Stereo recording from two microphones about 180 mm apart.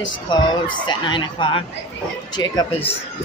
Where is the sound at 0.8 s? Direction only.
25° left (ahead or behind).